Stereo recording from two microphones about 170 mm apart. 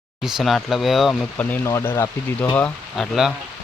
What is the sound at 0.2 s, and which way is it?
Speech, centre (ahead or behind).